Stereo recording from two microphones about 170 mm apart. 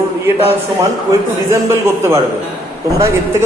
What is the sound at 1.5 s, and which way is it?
A man's voice, 15° right (ahead or behind).